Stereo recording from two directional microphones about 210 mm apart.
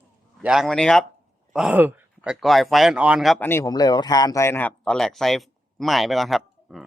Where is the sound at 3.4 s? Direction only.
15° left (ahead or behind).